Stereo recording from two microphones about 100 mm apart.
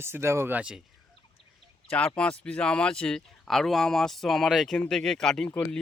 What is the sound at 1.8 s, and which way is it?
Speech, 10° left (ahead or behind).